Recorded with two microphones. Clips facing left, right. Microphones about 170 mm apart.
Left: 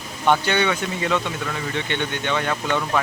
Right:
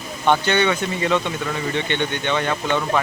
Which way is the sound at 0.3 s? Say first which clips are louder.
Right 1 dB; 5° left (ahead or behind).